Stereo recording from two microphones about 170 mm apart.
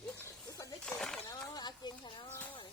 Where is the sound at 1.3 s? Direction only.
25° left (ahead or behind).